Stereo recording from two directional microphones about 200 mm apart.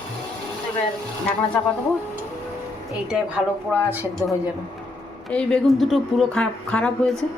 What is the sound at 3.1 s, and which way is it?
Speech, 5° right (ahead or behind).